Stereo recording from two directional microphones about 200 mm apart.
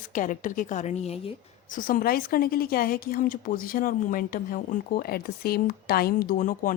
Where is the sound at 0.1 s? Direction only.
40° left (ahead or behind).